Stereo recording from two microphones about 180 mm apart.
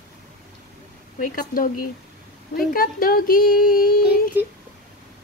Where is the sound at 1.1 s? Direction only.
50° left (ahead or behind).